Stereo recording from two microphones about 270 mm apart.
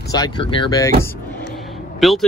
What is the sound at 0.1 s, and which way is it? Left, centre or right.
Speech, centre.